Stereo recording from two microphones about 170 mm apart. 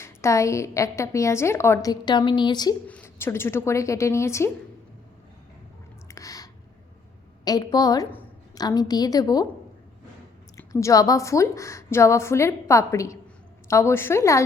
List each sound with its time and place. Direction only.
0.0 s a woman's voice: 15° left (ahead or behind)
2.8 s a woman's voice: 10° left (ahead or behind)
6.1 s a sound: 20° left (ahead or behind)
7.4 s a woman's voice: 25° left (ahead or behind)
10.6 s a woman's voice: 20° left (ahead or behind)